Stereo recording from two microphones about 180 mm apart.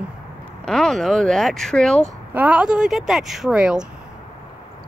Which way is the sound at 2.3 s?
5° right (ahead or behind).